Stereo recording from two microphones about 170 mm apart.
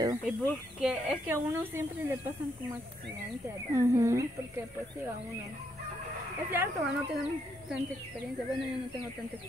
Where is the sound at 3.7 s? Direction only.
15° right (ahead or behind).